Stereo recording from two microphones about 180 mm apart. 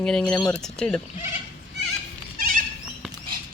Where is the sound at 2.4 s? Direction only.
55° right (ahead or behind).